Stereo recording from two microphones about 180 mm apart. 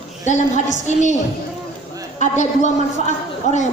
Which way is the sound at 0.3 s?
40° left (ahead or behind).